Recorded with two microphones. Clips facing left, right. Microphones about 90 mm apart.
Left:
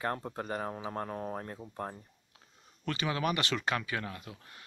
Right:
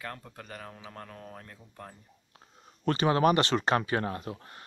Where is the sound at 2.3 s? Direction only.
40° right (ahead or behind).